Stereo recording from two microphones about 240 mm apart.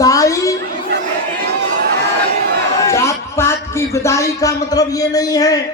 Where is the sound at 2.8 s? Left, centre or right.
Centre.